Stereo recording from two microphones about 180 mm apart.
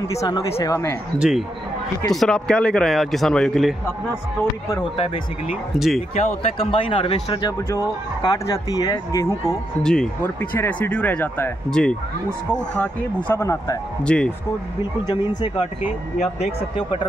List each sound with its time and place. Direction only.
0.1 s speech: 15° left (ahead or behind)
2.0 s speech: 5° left (ahead or behind)
4.9 s speech: 30° left (ahead or behind)
5.5 s speech: centre (ahead or behind)
5.9 s speech: 35° left (ahead or behind)
7.7 s speech: 20° left (ahead or behind)
14.0 s speech: 5° left (ahead or behind)
16.2 s speech: 35° left (ahead or behind)